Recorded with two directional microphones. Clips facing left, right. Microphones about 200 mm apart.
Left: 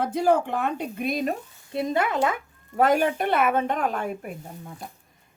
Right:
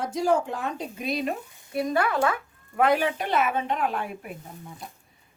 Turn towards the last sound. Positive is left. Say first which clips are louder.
# left 3 dB
turn(degrees=45)  # may be behind; listen again after turning